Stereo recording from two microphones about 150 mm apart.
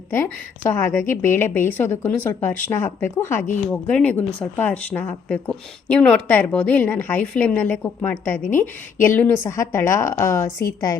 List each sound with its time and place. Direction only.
0.1 s a woman's voice: 15° left (ahead or behind)